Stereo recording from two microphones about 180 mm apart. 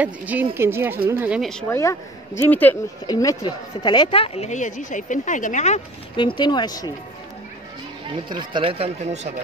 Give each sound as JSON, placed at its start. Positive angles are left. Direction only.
{"t": 0.0, "sound": "speech", "side_deg": -10}
{"t": 1.4, "sound": "speech", "side_deg": 5}
{"t": 1.8, "sound": "speech", "side_deg": 15}
{"t": 3.1, "sound": "speech", "side_deg": 20}
{"t": 6.1, "sound": "speech", "side_deg": 25}
{"t": 8.3, "sound": "speech", "side_deg": -25}